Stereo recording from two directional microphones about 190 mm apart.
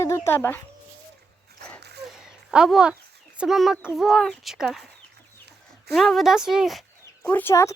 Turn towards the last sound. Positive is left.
turn(degrees=15)  # may be behind; listen again after turning